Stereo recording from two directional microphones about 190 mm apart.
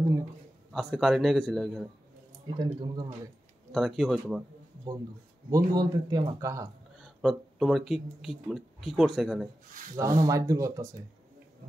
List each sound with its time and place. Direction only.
0.7 s a man's voice: centre (ahead or behind)
2.4 s speech: 20° right (ahead or behind)
3.7 s a man's voice: centre (ahead or behind)
5.7 s speech: 20° right (ahead or behind)
7.0 s speech: centre (ahead or behind)
9.9 s speech: 20° right (ahead or behind)